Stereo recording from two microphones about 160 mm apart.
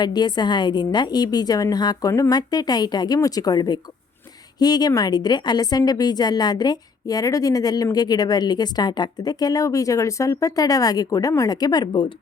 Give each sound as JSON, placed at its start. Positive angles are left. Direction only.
{"t": 0.0, "sound": "a woman's voice", "side_deg": 25}